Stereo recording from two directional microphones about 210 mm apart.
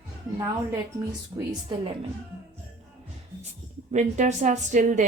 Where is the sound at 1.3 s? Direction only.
15° right (ahead or behind).